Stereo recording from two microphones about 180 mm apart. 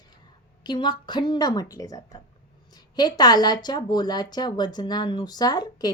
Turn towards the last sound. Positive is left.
turn(degrees=20)  # may be behind; listen again after turning